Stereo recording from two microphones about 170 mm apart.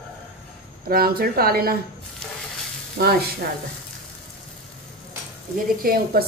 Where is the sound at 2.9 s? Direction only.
65° right (ahead or behind).